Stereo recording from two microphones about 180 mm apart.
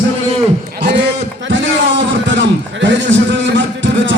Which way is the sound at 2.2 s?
90° right.